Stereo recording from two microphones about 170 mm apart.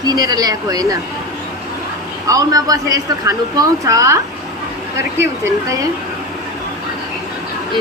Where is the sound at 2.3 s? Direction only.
20° right (ahead or behind).